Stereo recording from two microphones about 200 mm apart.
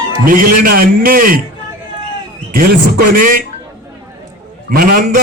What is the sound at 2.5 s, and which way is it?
Speech, 45° right (ahead or behind).